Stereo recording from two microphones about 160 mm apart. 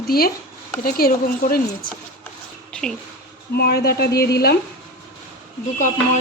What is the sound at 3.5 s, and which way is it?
A woman's voice, 75° left (ahead or behind).